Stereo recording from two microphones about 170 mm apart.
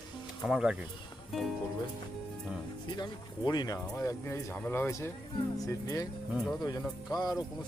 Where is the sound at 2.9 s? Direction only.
25° left (ahead or behind).